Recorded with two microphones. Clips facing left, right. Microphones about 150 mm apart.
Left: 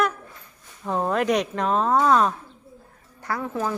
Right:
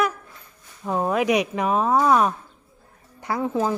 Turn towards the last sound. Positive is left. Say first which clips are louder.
# right 4 dB
turn(degrees=-20)  # may be behind; listen again after turning